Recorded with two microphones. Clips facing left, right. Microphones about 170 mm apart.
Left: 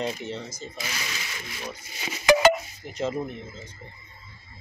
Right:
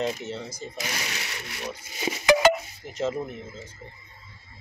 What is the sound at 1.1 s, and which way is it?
Speech, 70° right (ahead or behind).